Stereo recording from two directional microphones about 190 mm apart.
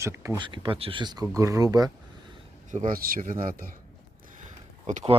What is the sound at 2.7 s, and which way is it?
Speech, 45° right (ahead or behind).